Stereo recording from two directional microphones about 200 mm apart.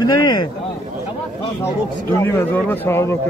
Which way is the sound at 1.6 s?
15° left (ahead or behind).